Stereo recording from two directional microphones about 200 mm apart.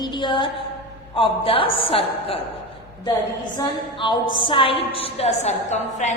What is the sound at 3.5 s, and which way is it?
A woman's voice, 20° left (ahead or behind).